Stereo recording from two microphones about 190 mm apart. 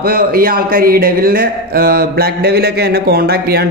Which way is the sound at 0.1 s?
50° right (ahead or behind).